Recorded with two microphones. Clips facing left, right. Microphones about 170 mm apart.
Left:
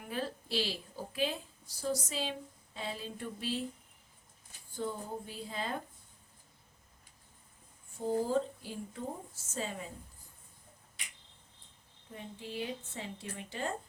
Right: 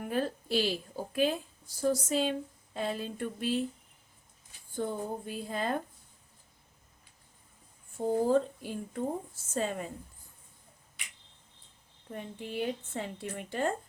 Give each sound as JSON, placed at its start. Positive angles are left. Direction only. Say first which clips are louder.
{"t": 0.0, "sound": "a woman's voice", "louder": "right 6 dB", "side_deg": -50}
{"t": 4.7, "sound": "a woman's voice", "louder": "right 4 dB", "side_deg": -55}
{"t": 7.9, "sound": "a woman's voice", "louder": "right 5 dB", "side_deg": -55}
{"t": 12.1, "sound": "a woman's voice", "louder": "right 5 dB", "side_deg": -55}